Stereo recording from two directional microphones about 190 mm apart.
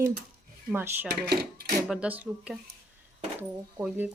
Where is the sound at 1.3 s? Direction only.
55° right (ahead or behind).